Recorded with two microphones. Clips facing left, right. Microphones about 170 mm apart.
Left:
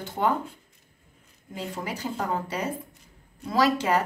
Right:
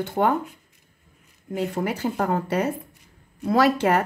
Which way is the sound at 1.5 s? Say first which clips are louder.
Right 8 dB; 60° right (ahead or behind).